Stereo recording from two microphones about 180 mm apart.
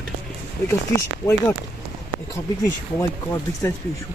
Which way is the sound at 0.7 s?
15° left (ahead or behind).